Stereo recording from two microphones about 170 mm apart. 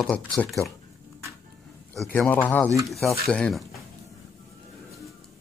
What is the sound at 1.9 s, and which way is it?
Speech, 5° left (ahead or behind).